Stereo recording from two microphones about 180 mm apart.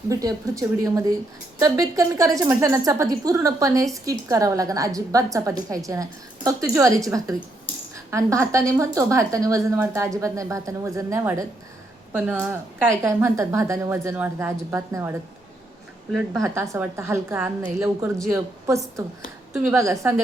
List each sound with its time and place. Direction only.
0.1 s a woman's voice: 20° right (ahead or behind)
16.4 s a woman's voice: 15° right (ahead or behind)